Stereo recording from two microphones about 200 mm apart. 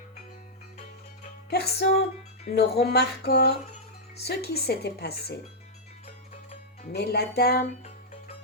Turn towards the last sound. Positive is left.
turn(degrees=50)  # may be behind; listen again after turning